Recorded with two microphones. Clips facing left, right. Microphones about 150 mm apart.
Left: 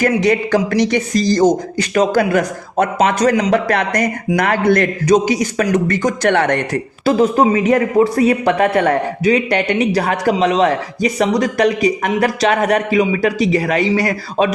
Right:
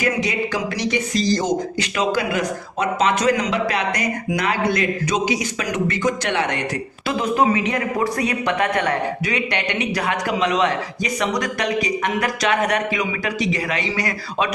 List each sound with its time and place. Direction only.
0.0 s speech: 55° left (ahead or behind)
6.3 s speech: 55° left (ahead or behind)
7.0 s speech: 35° left (ahead or behind)
8.0 s speech: 30° left (ahead or behind)